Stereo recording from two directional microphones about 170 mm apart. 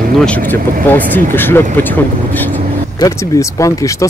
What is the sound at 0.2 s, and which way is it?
Speech, 10° left (ahead or behind).